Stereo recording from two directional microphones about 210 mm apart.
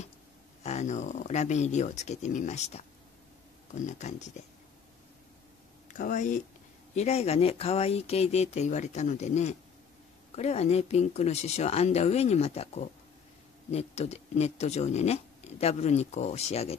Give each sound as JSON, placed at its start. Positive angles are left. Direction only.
{"t": 0.7, "sound": "speech", "side_deg": 35}
{"t": 5.9, "sound": "speech", "side_deg": 35}